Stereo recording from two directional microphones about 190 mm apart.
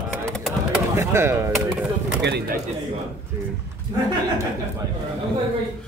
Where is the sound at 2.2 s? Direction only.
60° right (ahead or behind).